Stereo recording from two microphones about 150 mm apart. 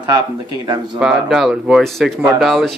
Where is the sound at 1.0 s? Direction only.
5° right (ahead or behind).